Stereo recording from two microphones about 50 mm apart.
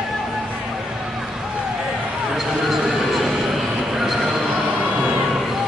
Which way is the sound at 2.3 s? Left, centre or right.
Centre.